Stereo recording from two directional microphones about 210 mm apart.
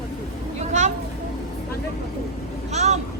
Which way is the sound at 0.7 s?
35° right (ahead or behind).